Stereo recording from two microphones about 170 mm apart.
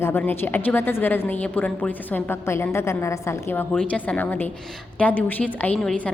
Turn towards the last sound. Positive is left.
turn(degrees=5)  # may be behind; listen again after turning